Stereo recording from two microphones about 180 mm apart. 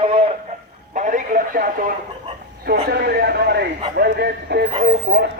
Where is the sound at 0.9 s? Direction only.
45° right (ahead or behind).